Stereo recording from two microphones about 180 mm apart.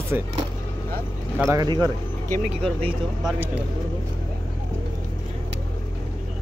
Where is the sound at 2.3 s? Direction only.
5° left (ahead or behind).